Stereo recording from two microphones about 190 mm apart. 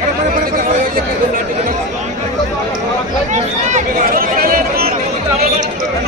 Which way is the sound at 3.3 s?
45° right (ahead or behind).